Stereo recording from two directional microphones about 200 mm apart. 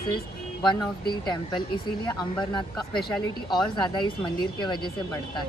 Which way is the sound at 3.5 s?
20° left (ahead or behind).